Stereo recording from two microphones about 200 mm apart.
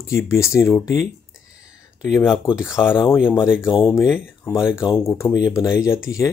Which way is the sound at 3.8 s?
10° left (ahead or behind).